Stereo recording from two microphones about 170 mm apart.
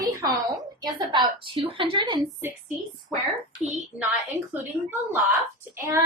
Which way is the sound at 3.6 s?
5° right (ahead or behind).